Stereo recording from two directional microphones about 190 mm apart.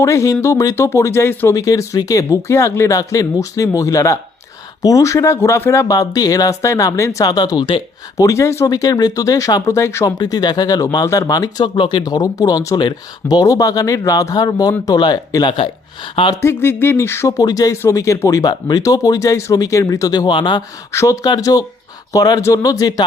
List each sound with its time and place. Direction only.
0.0 s speech: 15° left (ahead or behind)